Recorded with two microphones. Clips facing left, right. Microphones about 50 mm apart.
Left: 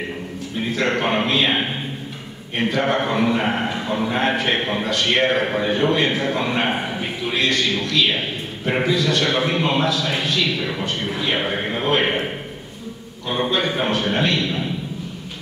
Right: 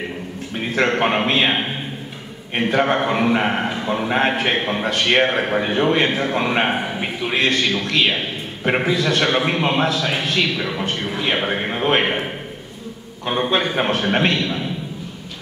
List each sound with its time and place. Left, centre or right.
0.7 s a man's voice: right
2.7 s a man's voice: right
3.4 s a man's voice: right
11.1 s a man's voice: right
13.5 s a man's voice: right